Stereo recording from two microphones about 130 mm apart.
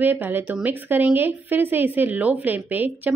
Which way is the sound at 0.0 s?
15° right (ahead or behind).